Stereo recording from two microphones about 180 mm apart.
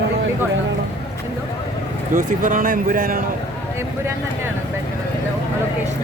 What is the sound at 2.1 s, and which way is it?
Speech, 50° right (ahead or behind).